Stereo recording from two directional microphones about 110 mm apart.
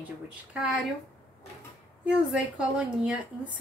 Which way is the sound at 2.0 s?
10° right (ahead or behind).